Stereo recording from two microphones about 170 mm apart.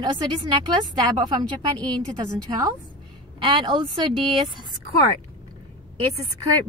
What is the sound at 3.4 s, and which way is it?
A woman's voice, 30° right (ahead or behind).